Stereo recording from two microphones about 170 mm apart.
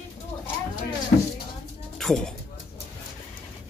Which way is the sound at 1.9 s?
5° left (ahead or behind).